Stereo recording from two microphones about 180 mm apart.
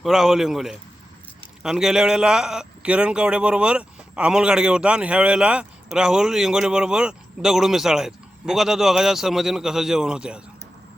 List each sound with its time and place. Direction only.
0.0 s a man's voice: centre (ahead or behind)